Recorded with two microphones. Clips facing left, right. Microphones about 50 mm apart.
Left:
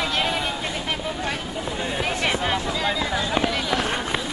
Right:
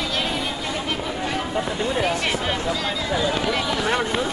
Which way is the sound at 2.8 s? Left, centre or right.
Centre.